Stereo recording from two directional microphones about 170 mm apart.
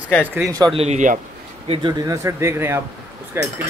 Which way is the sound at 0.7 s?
40° right (ahead or behind).